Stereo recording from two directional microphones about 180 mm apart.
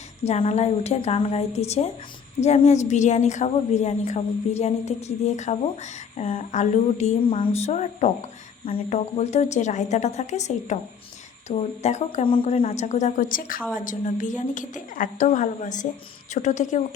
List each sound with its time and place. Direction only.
0.2 s a woman's voice: 35° left (ahead or behind)